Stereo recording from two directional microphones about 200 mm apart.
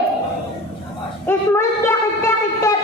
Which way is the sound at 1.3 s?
10° left (ahead or behind).